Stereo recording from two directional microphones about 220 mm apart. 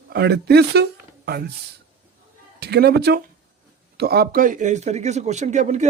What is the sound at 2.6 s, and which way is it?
Speech, 45° right (ahead or behind).